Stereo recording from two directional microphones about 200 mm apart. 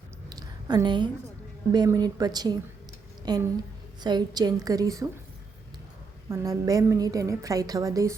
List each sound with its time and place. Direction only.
0.3 s a sound: 20° right (ahead or behind)
1.7 s a woman's voice: 20° right (ahead or behind)
6.2 s a woman's voice: 15° right (ahead or behind)